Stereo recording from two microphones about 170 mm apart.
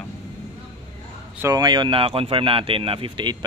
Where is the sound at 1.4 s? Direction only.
20° right (ahead or behind).